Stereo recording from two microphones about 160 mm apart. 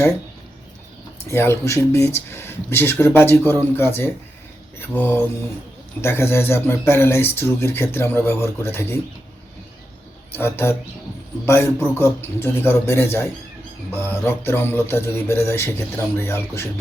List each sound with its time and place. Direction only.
1.3 s speech: 15° left (ahead or behind)
10.3 s speech: 15° left (ahead or behind)